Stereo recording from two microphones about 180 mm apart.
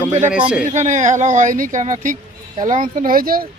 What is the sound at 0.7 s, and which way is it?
Speech, 45° right (ahead or behind).